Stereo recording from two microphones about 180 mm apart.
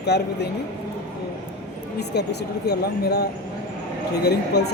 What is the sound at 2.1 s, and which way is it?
Speech, 65° left (ahead or behind).